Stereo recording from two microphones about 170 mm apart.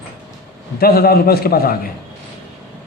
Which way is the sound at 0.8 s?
60° left (ahead or behind).